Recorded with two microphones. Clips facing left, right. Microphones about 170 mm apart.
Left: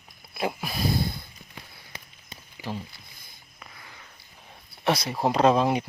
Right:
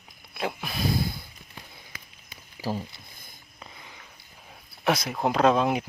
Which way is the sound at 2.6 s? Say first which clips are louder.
Right 4 dB; 45° right (ahead or behind).